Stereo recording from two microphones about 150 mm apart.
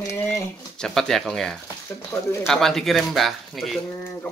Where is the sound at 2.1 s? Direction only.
20° left (ahead or behind).